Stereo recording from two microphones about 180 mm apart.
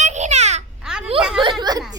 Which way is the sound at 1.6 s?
20° right (ahead or behind).